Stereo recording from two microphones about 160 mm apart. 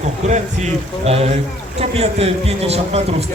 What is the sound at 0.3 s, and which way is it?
A man's voice, 45° right (ahead or behind).